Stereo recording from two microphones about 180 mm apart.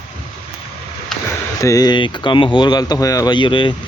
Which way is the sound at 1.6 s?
20° left (ahead or behind).